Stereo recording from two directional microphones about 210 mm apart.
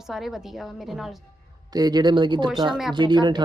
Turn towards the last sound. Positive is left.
turn(degrees=-20)  # may be behind; listen again after turning